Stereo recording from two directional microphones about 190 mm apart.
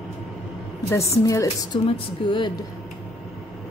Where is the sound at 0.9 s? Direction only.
15° left (ahead or behind).